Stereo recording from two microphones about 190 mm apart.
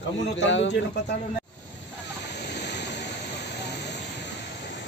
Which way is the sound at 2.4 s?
60° left (ahead or behind).